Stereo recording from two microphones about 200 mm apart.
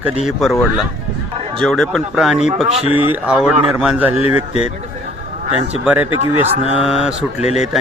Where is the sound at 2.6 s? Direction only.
30° right (ahead or behind).